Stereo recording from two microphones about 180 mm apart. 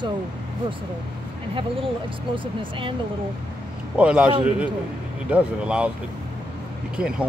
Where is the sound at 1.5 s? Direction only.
30° right (ahead or behind).